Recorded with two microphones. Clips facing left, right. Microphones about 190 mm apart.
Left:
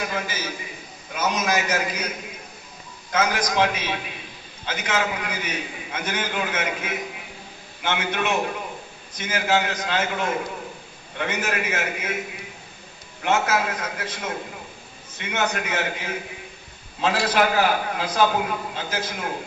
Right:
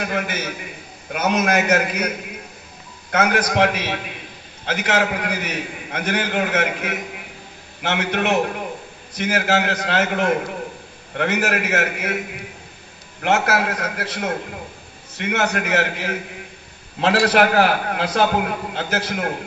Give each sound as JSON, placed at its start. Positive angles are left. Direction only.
{"t": 0.1, "sound": "a man's voice", "side_deg": -65}
{"t": 13.2, "sound": "a man's voice", "side_deg": -70}